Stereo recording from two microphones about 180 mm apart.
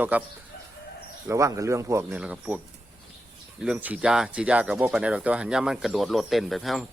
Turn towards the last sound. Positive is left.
turn(degrees=0)  # may be behind; listen again after turning